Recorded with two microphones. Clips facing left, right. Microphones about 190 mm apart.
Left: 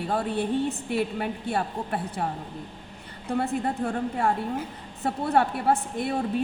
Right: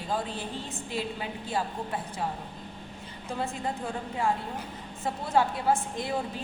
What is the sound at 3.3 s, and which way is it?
A woman's voice, 65° left (ahead or behind).